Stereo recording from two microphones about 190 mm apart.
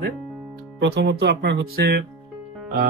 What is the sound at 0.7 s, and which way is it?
Speech, 60° right (ahead or behind).